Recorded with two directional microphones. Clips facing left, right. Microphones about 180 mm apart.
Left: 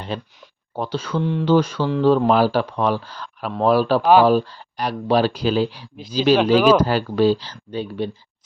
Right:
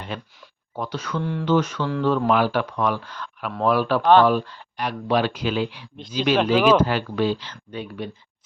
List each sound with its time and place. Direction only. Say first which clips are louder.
0.1 s speech: left 4 dB; 30° left (ahead or behind)
1.5 s speech: left 3 dB; 30° left (ahead or behind)
4.0 s speech: even; 10° left (ahead or behind)
4.3 s speech: left 5 dB; 35° left (ahead or behind)